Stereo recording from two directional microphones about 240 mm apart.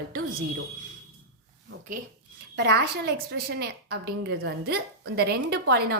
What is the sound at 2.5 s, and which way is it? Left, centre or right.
A woman's voice, right.